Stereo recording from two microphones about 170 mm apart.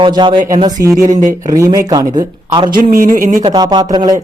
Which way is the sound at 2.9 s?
55° right (ahead or behind).